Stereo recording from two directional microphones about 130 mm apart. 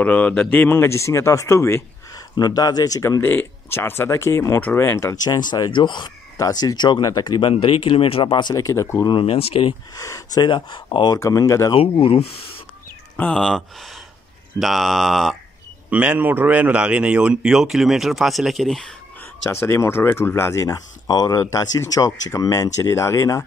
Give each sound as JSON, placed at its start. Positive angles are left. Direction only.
{"t": 0.0, "sound": "speech", "side_deg": 10}
{"t": 7.5, "sound": "speech", "side_deg": 45}
{"t": 9.0, "sound": "speech", "side_deg": 40}
{"t": 9.9, "sound": "speech", "side_deg": 25}
{"t": 11.1, "sound": "speech", "side_deg": 25}
{"t": 11.7, "sound": "speech", "side_deg": 40}
{"t": 13.1, "sound": "speech", "side_deg": 5}
{"t": 15.9, "sound": "a man's voice", "side_deg": -10}
{"t": 19.5, "sound": "speech", "side_deg": 20}